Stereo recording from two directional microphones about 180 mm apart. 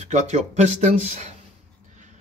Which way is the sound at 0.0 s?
40° right (ahead or behind).